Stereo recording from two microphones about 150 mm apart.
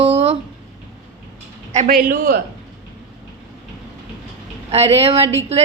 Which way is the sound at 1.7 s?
60° right (ahead or behind).